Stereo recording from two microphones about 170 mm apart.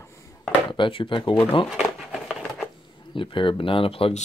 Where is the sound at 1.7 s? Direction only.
Centre (ahead or behind).